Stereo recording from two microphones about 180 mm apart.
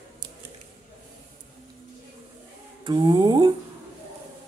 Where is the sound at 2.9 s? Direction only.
25° right (ahead or behind).